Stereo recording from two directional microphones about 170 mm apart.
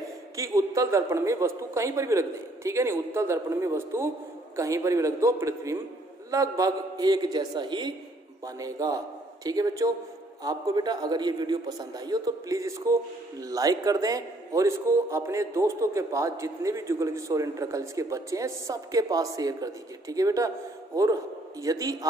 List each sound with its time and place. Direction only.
0.4 s a man's voice: 20° right (ahead or behind)